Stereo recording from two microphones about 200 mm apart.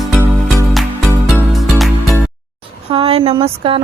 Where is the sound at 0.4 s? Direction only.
Centre (ahead or behind).